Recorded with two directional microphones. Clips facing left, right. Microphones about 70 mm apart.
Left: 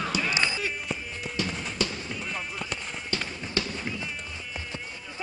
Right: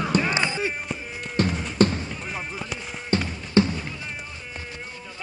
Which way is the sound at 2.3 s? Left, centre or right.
Centre.